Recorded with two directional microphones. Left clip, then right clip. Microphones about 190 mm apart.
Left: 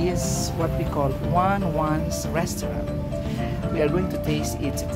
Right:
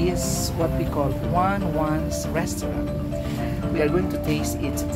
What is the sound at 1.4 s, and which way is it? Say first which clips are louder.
Speech: left 1 dB; 20° left (ahead or behind).